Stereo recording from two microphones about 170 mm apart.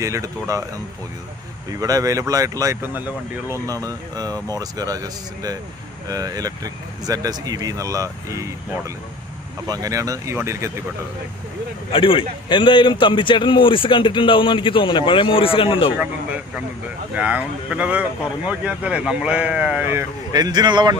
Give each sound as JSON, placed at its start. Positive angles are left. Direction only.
{"t": 0.0, "sound": "speech", "side_deg": -20}
{"t": 1.7, "sound": "speech", "side_deg": -20}
{"t": 11.9, "sound": "a man's voice", "side_deg": 30}
{"t": 16.0, "sound": "speech", "side_deg": -10}